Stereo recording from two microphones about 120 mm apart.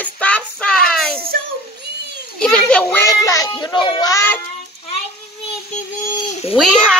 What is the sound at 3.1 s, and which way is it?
Speech, 30° left (ahead or behind).